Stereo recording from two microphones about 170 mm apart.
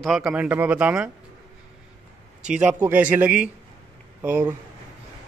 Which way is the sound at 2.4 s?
5° right (ahead or behind).